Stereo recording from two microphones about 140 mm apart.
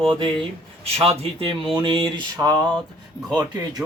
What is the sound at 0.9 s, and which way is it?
Speech, 45° right (ahead or behind).